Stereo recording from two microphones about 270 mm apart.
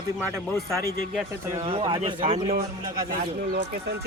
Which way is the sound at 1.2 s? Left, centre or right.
Centre.